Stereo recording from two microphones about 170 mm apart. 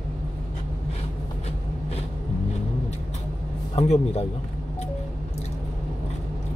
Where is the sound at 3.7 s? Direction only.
40° left (ahead or behind).